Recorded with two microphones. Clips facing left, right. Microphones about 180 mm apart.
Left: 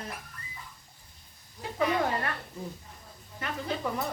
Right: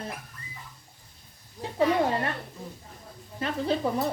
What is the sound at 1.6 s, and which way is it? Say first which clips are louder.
Speech: right 4 dB; 25° right (ahead or behind).